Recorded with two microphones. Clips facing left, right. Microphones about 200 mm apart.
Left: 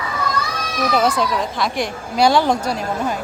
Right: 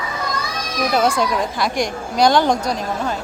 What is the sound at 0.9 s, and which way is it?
Speech, 5° left (ahead or behind).